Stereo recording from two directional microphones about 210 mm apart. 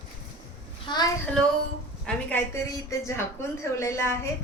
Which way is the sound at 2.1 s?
5° left (ahead or behind).